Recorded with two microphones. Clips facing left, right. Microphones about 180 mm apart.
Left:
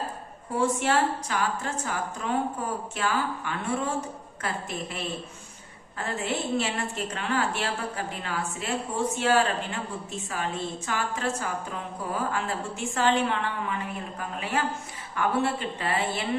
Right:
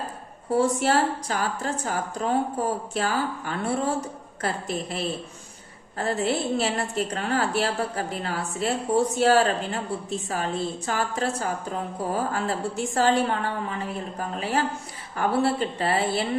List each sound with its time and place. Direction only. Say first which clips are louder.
0.5 s a woman's voice: right 3 dB; 35° right (ahead or behind)